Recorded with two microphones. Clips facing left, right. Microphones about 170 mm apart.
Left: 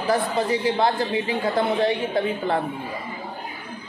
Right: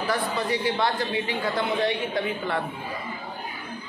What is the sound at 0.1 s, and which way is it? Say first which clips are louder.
A woman's voice: left 6 dB; 25° left (ahead or behind).